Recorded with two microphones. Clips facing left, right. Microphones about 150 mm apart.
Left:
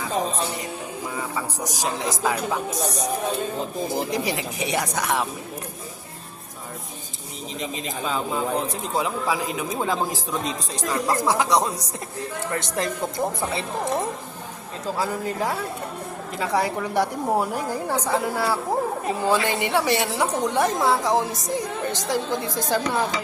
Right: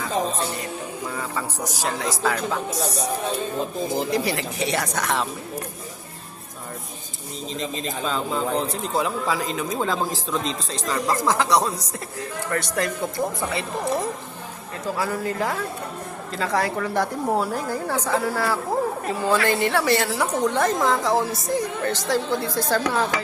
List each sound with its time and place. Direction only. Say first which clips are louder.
0.0 s music: right 1 dB; 10° left (ahead or behind)
1.1 s a woman's voice: left 1 dB; 15° left (ahead or behind)
3.9 s a woman's voice: right 2 dB; 15° left (ahead or behind)
7.6 s a woman's voice: right 1 dB; 15° left (ahead or behind)
14.9 s a woman's voice: right 1 dB; 15° left (ahead or behind)